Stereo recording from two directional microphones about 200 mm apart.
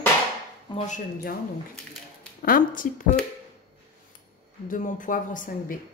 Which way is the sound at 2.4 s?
45° left (ahead or behind).